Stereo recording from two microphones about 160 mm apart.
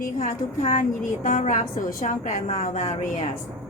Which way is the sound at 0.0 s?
55° left (ahead or behind).